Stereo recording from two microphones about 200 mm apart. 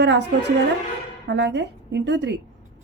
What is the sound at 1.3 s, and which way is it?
Speech, 60° right (ahead or behind).